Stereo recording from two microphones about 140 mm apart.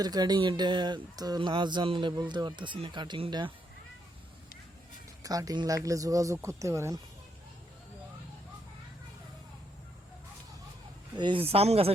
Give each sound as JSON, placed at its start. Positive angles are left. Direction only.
{"t": 0.0, "sound": "speech", "side_deg": -30}
{"t": 5.2, "sound": "speech", "side_deg": -25}
{"t": 11.1, "sound": "speech", "side_deg": -35}